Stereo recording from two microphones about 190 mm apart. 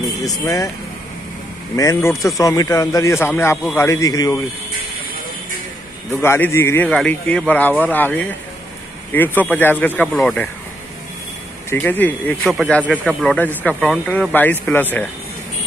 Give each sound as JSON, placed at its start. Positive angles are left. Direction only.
{"t": 0.4, "sound": "speech", "side_deg": 15}
{"t": 2.0, "sound": "speech", "side_deg": 15}
{"t": 6.2, "sound": "speech", "side_deg": 15}
{"t": 11.7, "sound": "speech", "side_deg": 10}